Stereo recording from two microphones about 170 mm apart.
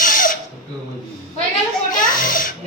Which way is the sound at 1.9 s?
55° left (ahead or behind).